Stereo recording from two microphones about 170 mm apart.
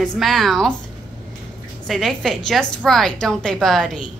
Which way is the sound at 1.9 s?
Centre (ahead or behind).